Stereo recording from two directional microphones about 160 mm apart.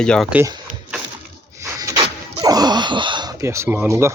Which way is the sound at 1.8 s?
20° right (ahead or behind).